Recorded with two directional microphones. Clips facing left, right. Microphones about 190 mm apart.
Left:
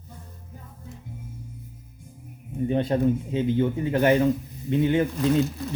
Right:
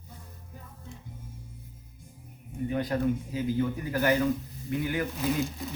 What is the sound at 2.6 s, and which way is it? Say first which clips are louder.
A man's voice: left 5 dB; 25° left (ahead or behind).